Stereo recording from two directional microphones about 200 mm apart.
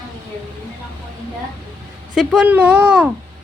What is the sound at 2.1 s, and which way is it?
Speech, centre (ahead or behind).